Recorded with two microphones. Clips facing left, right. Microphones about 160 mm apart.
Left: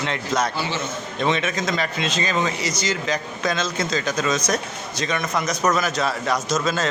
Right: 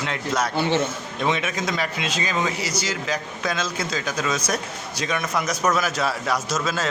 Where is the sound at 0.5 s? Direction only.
60° right (ahead or behind).